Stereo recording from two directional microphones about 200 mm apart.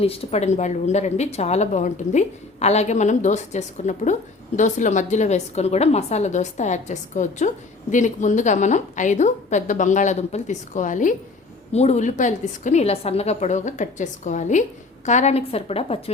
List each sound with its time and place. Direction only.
0.0 s speech: 30° left (ahead or behind)